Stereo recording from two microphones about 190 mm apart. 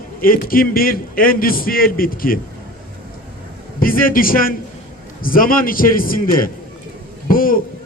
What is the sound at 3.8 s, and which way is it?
A man's voice, 50° left (ahead or behind).